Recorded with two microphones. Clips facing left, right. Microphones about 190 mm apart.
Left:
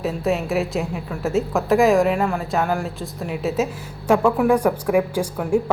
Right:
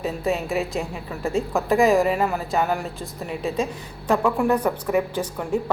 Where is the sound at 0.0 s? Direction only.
Centre (ahead or behind).